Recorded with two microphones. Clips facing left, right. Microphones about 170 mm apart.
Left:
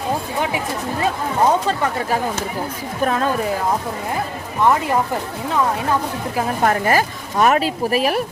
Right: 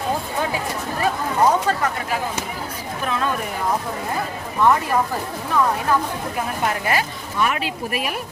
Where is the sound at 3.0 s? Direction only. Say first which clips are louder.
Left 6 dB; 45° left (ahead or behind).